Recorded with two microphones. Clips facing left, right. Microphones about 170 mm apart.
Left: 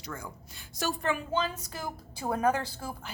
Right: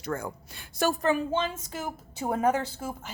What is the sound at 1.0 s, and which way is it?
Speech, 35° right (ahead or behind).